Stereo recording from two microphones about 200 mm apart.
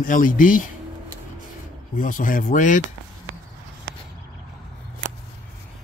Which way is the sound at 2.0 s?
40° left (ahead or behind).